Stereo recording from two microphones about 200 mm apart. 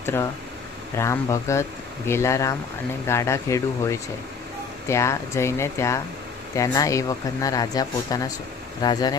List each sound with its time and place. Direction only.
0.0 s speech: 10° left (ahead or behind)